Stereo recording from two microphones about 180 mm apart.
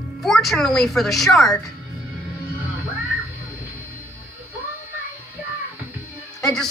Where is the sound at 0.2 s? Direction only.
Centre (ahead or behind).